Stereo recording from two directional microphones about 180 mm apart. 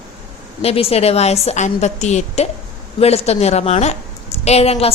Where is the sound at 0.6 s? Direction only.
35° left (ahead or behind).